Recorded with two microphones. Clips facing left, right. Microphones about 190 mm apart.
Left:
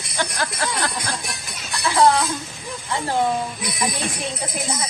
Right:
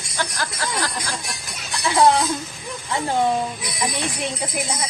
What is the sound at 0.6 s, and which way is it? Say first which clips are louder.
Speech: right 1 dB; 55° left (ahead or behind).